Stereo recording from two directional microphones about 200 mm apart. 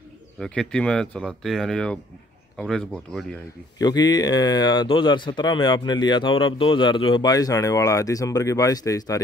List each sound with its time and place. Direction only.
0.4 s speech: 5° left (ahead or behind)
3.7 s speech: 20° left (ahead or behind)